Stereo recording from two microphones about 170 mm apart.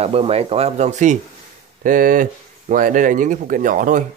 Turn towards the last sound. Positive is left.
turn(degrees=-50)  # may be behind; listen again after turning